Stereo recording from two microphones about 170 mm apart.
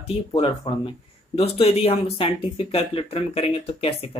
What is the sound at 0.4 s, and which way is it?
Speech, 30° left (ahead or behind).